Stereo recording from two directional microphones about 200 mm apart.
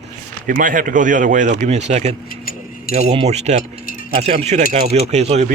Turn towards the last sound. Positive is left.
turn(degrees=-35)  # may be behind; listen again after turning